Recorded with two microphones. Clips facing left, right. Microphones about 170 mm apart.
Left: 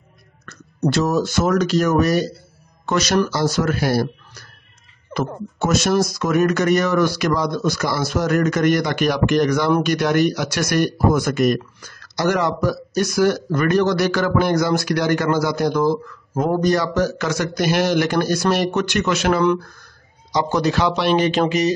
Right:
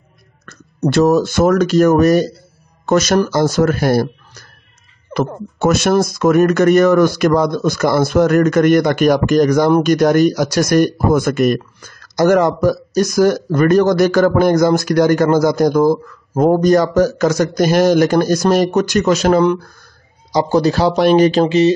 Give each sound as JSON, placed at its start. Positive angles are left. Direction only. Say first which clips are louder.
{"t": 0.5, "sound": "speech", "louder": "right 3 dB", "side_deg": -55}
{"t": 5.1, "sound": "speech", "louder": "right 5 dB", "side_deg": -60}